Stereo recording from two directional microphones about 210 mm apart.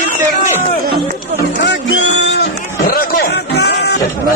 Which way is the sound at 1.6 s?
60° left (ahead or behind).